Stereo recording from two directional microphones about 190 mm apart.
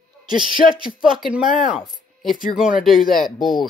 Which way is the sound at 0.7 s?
5° right (ahead or behind).